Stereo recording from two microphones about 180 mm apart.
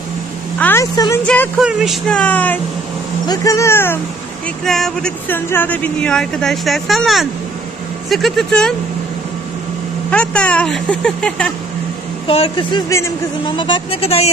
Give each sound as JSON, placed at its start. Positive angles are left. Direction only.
{"t": 0.6, "sound": "a woman's voice", "side_deg": 10}
{"t": 0.9, "sound": "speech", "side_deg": 20}
{"t": 1.2, "sound": "speech", "side_deg": 10}
{"t": 1.6, "sound": "speech", "side_deg": -5}
{"t": 4.6, "sound": "speech", "side_deg": 0}
{"t": 10.1, "sound": "speech", "side_deg": 5}
{"t": 12.3, "sound": "speech", "side_deg": 30}